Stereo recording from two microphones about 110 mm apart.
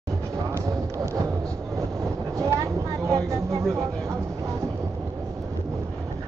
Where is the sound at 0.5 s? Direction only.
30° right (ahead or behind).